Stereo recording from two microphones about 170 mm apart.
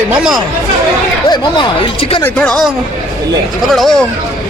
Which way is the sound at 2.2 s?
5° left (ahead or behind).